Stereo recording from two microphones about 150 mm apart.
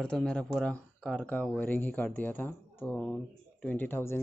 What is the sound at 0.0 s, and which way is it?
Speech, 5° left (ahead or behind).